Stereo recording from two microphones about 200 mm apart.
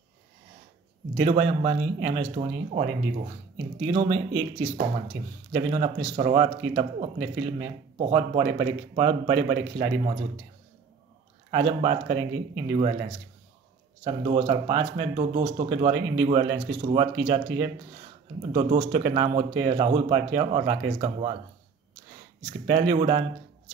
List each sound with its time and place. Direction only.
1.1 s speech: 30° right (ahead or behind)
5.5 s speech: 30° right (ahead or behind)
11.5 s speech: 30° right (ahead or behind)
14.0 s speech: 25° right (ahead or behind)
22.7 s speech: 30° right (ahead or behind)